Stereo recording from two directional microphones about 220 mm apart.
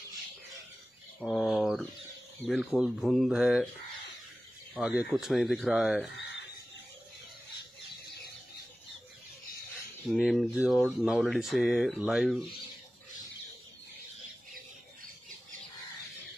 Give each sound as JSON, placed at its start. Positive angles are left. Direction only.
{"t": 1.2, "sound": "a sound", "side_deg": 0}
{"t": 2.4, "sound": "speech", "side_deg": 5}
{"t": 4.7, "sound": "speech", "side_deg": 0}
{"t": 10.0, "sound": "speech", "side_deg": 0}